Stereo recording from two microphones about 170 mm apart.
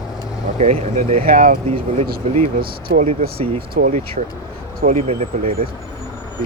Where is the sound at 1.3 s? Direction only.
55° right (ahead or behind).